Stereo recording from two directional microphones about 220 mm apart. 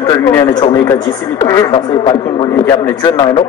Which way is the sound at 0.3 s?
20° left (ahead or behind).